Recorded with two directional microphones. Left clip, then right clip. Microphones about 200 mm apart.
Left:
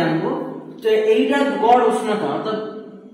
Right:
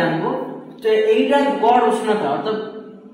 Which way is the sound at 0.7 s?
15° right (ahead or behind).